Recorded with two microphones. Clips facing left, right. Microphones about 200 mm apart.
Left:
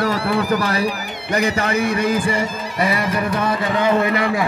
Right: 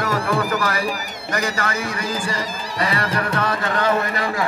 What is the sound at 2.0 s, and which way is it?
Music, 60° left (ahead or behind).